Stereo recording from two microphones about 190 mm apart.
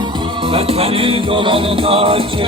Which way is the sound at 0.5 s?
30° right (ahead or behind).